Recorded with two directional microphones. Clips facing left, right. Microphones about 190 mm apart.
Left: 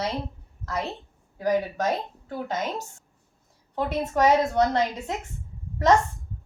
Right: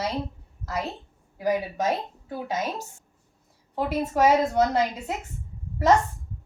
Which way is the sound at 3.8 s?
5° right (ahead or behind).